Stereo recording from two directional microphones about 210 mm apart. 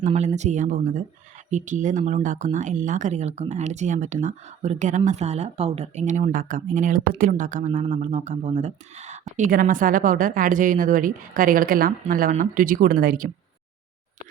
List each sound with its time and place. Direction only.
0.0 s speech: 35° right (ahead or behind)